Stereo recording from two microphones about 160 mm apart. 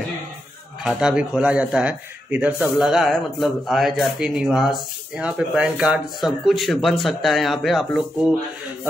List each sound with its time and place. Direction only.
0.8 s a man's voice: 5° right (ahead or behind)